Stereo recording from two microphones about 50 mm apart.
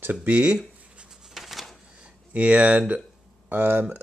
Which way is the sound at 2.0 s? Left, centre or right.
Right.